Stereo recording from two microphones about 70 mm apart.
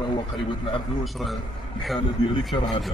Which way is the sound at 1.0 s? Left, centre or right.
Centre.